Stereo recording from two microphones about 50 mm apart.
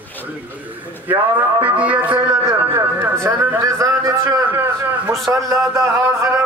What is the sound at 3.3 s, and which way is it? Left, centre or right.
Speech, right.